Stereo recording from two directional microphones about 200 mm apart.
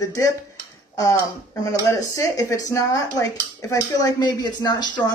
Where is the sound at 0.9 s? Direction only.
15° left (ahead or behind).